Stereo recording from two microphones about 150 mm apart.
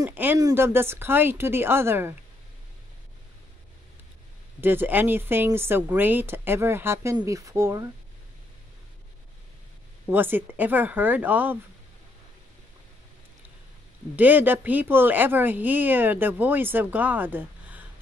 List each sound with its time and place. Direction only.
0.1 s a woman's voice: 15° right (ahead or behind)
4.6 s a woman's voice: 15° right (ahead or behind)
10.0 s a woman's voice: 15° right (ahead or behind)
14.1 s a woman's voice: 10° right (ahead or behind)